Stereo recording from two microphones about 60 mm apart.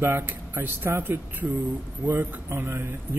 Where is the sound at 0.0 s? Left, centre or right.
Right.